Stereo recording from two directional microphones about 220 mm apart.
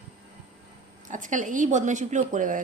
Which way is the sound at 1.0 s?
35° right (ahead or behind).